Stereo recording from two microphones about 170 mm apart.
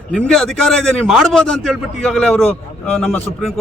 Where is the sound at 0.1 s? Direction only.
5° left (ahead or behind).